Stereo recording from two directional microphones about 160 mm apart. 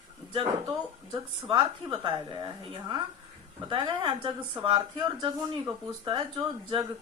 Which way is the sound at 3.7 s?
30° right (ahead or behind).